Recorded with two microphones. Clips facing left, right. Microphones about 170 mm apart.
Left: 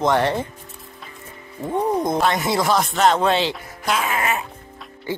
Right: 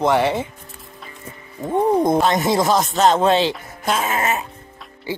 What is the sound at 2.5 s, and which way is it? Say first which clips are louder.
Speech: right 2 dB; 20° right (ahead or behind).